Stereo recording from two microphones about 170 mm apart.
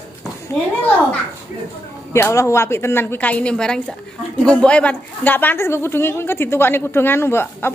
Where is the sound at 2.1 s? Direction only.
15° left (ahead or behind).